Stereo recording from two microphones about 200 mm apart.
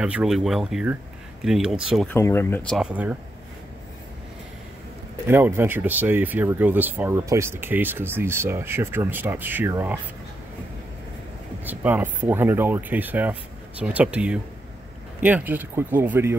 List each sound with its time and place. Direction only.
0.0 s speech: 5° right (ahead or behind)
2.0 s speech: 10° left (ahead or behind); by 3.2 s 5° right (ahead or behind)
5.2 s speech: 10° right (ahead or behind)
11.6 s speech: 10° right (ahead or behind)